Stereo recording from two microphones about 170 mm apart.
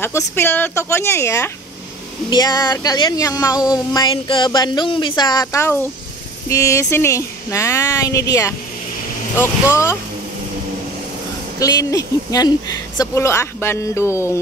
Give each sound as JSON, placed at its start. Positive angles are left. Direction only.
{"t": 0.0, "sound": "speech", "side_deg": 15}
{"t": 11.6, "sound": "speech", "side_deg": 20}